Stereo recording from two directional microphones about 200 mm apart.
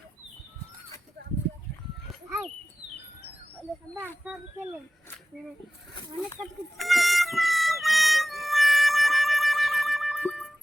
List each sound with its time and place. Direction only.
4.2 s speech: 10° right (ahead or behind)
5.9 s speech: 25° left (ahead or behind)
6.7 s music: centre (ahead or behind)